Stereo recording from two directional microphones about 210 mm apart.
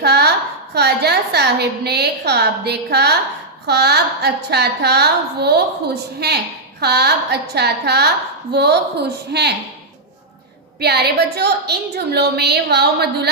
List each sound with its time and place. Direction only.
0.0 s a woman's voice: 50° right (ahead or behind)
10.8 s a woman's voice: 50° right (ahead or behind)